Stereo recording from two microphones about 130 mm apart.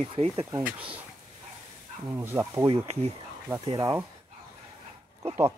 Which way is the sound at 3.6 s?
40° right (ahead or behind).